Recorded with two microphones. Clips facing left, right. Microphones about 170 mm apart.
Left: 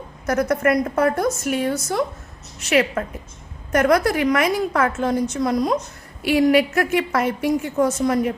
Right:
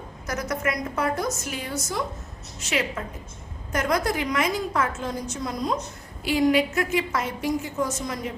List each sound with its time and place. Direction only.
0.3 s a woman's voice: 60° left (ahead or behind)